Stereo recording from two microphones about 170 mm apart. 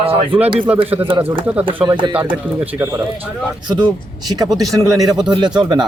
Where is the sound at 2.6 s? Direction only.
10° right (ahead or behind).